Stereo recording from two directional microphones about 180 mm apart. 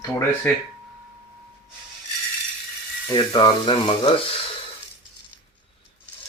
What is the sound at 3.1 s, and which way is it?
Speech, 20° left (ahead or behind).